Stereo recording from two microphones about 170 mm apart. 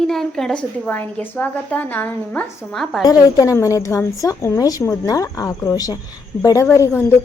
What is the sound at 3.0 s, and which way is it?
A woman's voice, 20° left (ahead or behind).